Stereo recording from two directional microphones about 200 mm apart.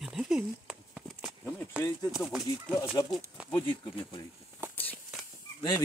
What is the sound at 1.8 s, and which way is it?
Speech, 5° right (ahead or behind).